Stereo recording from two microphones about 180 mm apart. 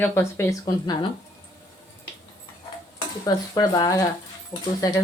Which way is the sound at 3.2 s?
20° left (ahead or behind).